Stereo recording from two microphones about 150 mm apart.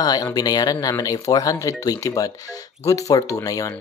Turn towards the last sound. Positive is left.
turn(degrees=25)  # may be behind; listen again after turning